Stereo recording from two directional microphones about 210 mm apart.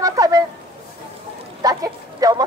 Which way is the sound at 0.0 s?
15° right (ahead or behind).